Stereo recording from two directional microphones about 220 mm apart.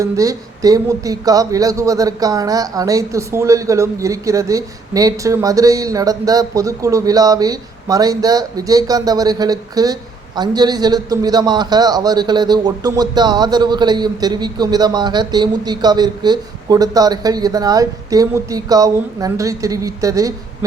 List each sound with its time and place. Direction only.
0.0 s speech: 15° right (ahead or behind)